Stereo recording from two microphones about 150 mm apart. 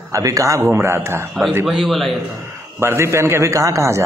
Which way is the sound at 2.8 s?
15° right (ahead or behind).